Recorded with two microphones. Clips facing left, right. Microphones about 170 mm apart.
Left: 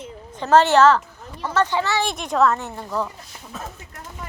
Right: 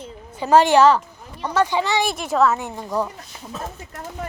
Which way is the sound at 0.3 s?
10° right (ahead or behind).